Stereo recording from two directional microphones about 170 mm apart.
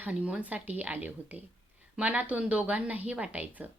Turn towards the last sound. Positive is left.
turn(degrees=-10)  # may be behind; listen again after turning